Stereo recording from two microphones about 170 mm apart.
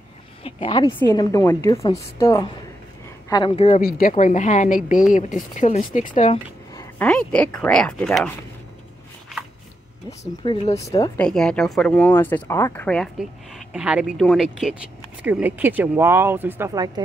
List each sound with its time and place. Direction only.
0.4 s a woman's voice: 35° left (ahead or behind)
3.5 s a woman's voice: 40° left (ahead or behind)
6.7 s a sound: 20° left (ahead or behind)
7.1 s speech: 5° left (ahead or behind)
10.4 s speech: 35° left (ahead or behind)
10.8 s a woman's voice: 20° left (ahead or behind)
11.1 s speech: 5° left (ahead or behind); by 17.0 s 20° right (ahead or behind)